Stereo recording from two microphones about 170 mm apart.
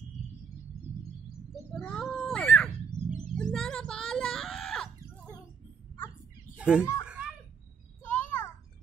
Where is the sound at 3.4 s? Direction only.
5° left (ahead or behind).